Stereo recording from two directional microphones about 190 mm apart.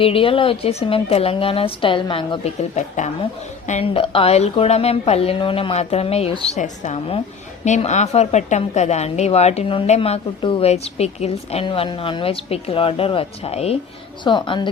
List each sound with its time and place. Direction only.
0.0 s a woman's voice: 30° left (ahead or behind)